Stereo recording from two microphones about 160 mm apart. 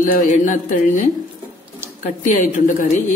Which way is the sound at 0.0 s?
55° left (ahead or behind).